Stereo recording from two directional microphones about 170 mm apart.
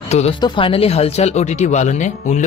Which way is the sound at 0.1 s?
40° left (ahead or behind).